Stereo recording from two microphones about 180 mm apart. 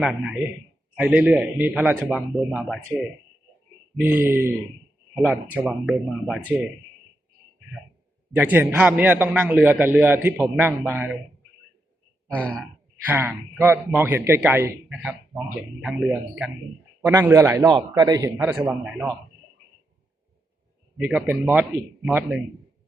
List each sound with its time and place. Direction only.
0.0 s a man's voice: 5° right (ahead or behind)
3.9 s a man's voice: 10° right (ahead or behind)
8.4 s a man's voice: 10° right (ahead or behind)
13.1 s a man's voice: 10° right (ahead or behind)
21.0 s a man's voice: 10° right (ahead or behind)